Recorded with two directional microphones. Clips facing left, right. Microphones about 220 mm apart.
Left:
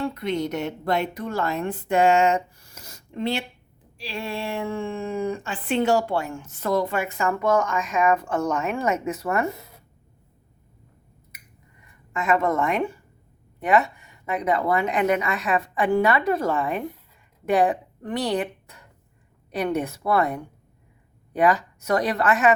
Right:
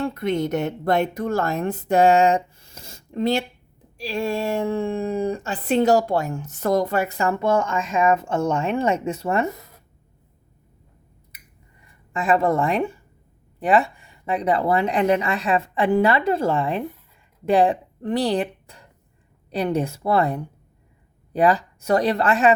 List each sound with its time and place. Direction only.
0.0 s speech: 50° right (ahead or behind); by 9.5 s 25° right (ahead or behind)
12.1 s speech: 30° right (ahead or behind)